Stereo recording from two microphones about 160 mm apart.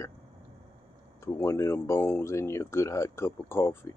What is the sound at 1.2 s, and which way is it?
Speech, 15° left (ahead or behind).